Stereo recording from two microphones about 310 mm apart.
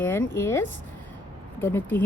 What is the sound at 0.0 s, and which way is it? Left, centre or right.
Speech, centre.